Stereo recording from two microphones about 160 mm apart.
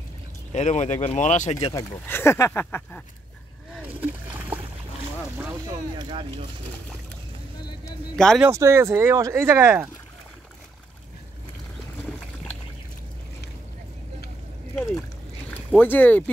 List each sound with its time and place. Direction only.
0.5 s speech: 45° left (ahead or behind)
1.8 s speech: 15° left (ahead or behind)
3.7 s splash: 10° right (ahead or behind)
5.9 s speech: 30° right (ahead or behind)
8.4 s speech: 15° right (ahead or behind)
15.5 s speech: 10° left (ahead or behind)